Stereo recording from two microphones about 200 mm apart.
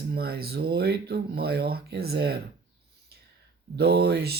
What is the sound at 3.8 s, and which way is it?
Speech, 55° right (ahead or behind).